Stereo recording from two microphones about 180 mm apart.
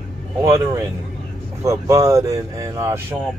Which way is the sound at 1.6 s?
15° right (ahead or behind).